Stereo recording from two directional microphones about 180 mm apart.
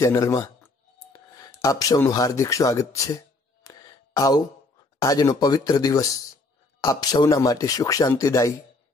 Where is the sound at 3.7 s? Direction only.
20° left (ahead or behind).